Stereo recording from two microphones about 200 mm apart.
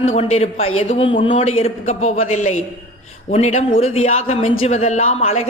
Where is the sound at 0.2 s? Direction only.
30° left (ahead or behind).